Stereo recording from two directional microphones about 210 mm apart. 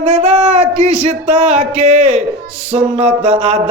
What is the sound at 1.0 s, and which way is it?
Speech, 30° right (ahead or behind).